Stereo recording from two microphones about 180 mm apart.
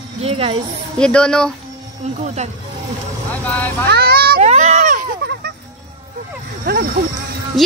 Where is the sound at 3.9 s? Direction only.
60° right (ahead or behind).